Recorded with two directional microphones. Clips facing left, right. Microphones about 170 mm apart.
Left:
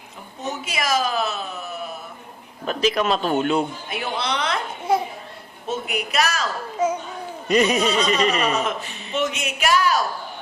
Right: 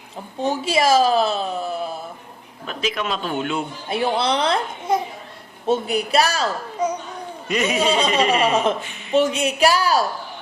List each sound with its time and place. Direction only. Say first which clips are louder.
0.3 s speech: right 8 dB; 30° right (ahead or behind)
2.6 s speech: left 5 dB; 40° left (ahead or behind)
3.8 s speech: right 6 dB; 30° right (ahead or behind)
5.6 s speech: right 6 dB; 30° right (ahead or behind)
7.4 s a man's voice: left 4 dB; 35° left (ahead or behind)
7.8 s speech: right 1 dB; 30° right (ahead or behind)